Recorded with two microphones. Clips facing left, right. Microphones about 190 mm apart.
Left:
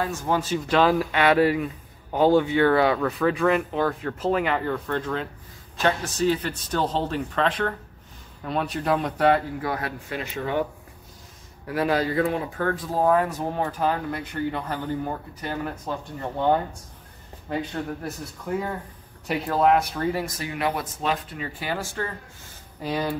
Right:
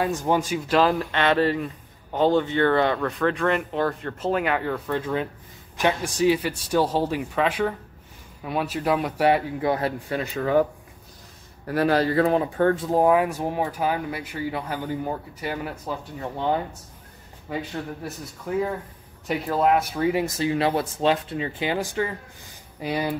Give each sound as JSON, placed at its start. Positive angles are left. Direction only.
{"t": 0.0, "sound": "speech", "side_deg": -15}
{"t": 0.7, "sound": "speech", "side_deg": 0}
{"t": 9.6, "sound": "speech", "side_deg": -25}
{"t": 11.8, "sound": "speech", "side_deg": -35}
{"t": 12.5, "sound": "speech", "side_deg": -25}
{"t": 19.2, "sound": "speech", "side_deg": 0}
{"t": 20.2, "sound": "speech", "side_deg": -25}